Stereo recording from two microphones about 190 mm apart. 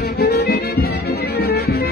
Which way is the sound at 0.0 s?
60° left (ahead or behind).